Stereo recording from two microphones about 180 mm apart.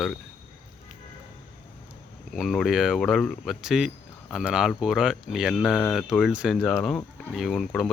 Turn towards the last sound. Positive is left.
turn(degrees=0)  # may be behind; listen again after turning